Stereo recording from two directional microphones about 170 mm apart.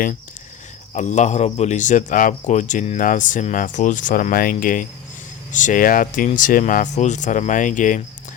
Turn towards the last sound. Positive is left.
turn(degrees=50)  # may be behind; listen again after turning